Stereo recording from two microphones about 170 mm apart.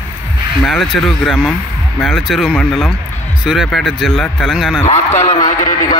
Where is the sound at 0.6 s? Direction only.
Centre (ahead or behind).